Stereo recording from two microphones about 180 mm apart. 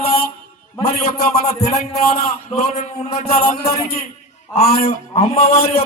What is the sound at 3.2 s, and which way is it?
Speech, 60° left (ahead or behind).